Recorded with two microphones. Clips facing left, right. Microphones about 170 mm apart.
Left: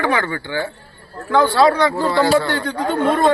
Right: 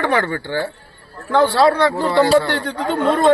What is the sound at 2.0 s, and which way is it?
Speech, 25° right (ahead or behind).